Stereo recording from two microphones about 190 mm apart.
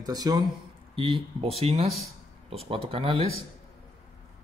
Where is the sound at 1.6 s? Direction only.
30° right (ahead or behind).